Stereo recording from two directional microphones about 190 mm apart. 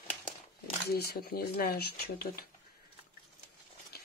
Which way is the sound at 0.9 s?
55° left (ahead or behind).